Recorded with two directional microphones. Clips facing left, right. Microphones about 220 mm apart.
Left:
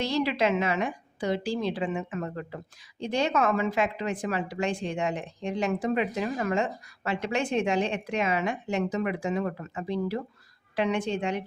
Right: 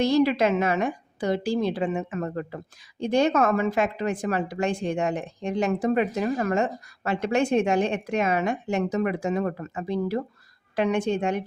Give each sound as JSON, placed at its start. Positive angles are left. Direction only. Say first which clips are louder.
{"t": 0.0, "sound": "a woman's voice", "louder": "right 6 dB", "side_deg": -50}